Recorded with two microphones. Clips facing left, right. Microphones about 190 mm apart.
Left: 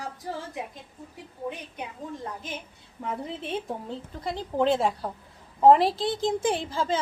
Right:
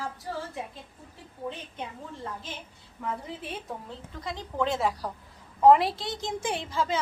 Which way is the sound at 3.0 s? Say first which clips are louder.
Left 3 dB; 25° left (ahead or behind).